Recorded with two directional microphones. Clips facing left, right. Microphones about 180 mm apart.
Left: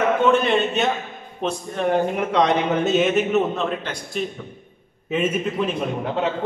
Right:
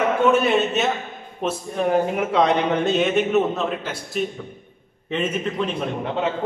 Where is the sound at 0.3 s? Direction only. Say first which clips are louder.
Even; 5° right (ahead or behind).